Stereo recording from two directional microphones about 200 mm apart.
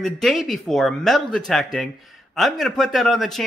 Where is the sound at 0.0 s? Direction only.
Centre (ahead or behind).